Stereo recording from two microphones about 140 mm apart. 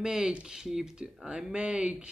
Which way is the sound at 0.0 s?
5° right (ahead or behind).